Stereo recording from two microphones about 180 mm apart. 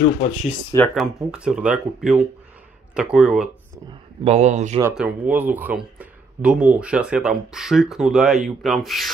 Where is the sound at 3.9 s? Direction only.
40° right (ahead or behind).